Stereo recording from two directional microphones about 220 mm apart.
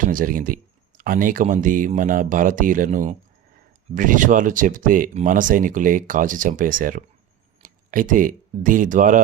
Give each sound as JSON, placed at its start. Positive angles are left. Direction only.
{"t": 0.0, "sound": "speech", "side_deg": -40}